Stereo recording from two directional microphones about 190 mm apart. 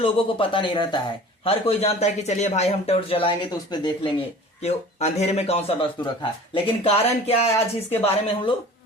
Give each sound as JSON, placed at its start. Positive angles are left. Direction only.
{"t": 0.0, "sound": "speech", "side_deg": 30}